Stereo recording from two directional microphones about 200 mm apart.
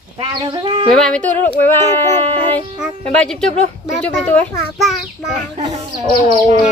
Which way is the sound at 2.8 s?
5° left (ahead or behind).